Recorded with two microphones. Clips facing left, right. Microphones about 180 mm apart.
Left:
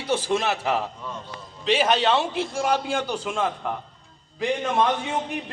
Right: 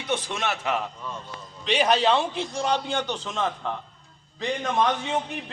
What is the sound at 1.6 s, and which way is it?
A man's voice, 5° left (ahead or behind).